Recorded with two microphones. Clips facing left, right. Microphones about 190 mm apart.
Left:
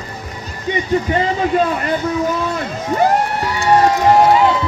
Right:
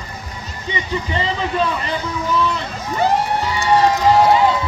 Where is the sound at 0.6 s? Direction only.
50° left (ahead or behind).